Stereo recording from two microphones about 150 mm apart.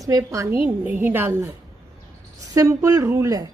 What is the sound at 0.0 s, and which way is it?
A woman's voice, 20° right (ahead or behind).